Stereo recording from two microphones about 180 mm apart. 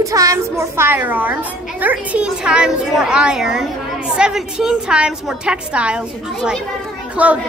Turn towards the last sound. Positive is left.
turn(degrees=-5)  # may be behind; listen again after turning